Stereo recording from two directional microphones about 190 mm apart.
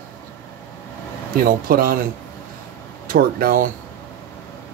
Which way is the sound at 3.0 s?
50° right (ahead or behind).